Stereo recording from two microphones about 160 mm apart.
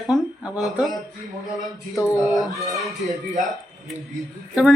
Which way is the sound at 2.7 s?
Centre (ahead or behind).